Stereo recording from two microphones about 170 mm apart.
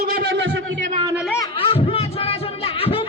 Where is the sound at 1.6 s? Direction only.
35° left (ahead or behind).